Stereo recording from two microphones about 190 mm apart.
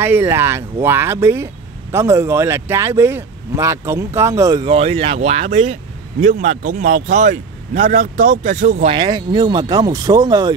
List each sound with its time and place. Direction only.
0.0 s speech: 10° right (ahead or behind)
4.6 s speech: 30° right (ahead or behind)
8.9 s speech: 25° right (ahead or behind)